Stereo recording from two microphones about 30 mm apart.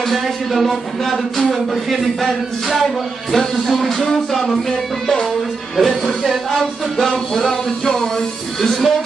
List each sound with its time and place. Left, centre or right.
0.1 s speech: centre
5.8 s speech: centre
7.1 s a sound: centre